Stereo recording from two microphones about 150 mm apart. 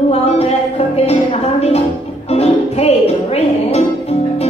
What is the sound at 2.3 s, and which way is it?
Music, 45° left (ahead or behind).